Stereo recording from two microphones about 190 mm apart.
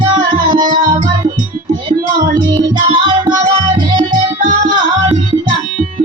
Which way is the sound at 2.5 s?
25° right (ahead or behind).